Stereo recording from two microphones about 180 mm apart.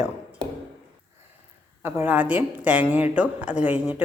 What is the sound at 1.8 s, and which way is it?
A woman's voice, 10° right (ahead or behind).